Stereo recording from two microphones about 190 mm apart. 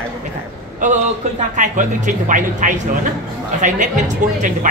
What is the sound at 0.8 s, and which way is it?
A woman's voice, 40° right (ahead or behind).